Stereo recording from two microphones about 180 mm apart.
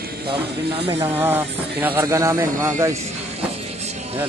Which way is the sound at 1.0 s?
10° right (ahead or behind).